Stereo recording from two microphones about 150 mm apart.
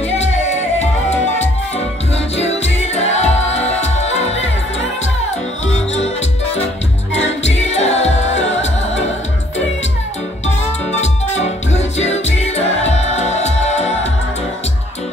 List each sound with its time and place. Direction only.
2.3 s music: 45° left (ahead or behind)
7.4 s music: 45° left (ahead or behind)
11.0 s music: 45° left (ahead or behind)